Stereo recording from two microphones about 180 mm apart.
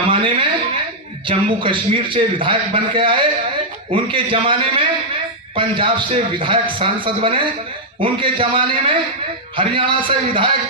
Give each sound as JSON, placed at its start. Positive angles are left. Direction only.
{"t": 0.1, "sound": "a woman's voice", "side_deg": -30}